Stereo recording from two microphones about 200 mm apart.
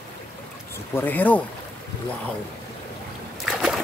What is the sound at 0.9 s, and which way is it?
Speech, 10° left (ahead or behind).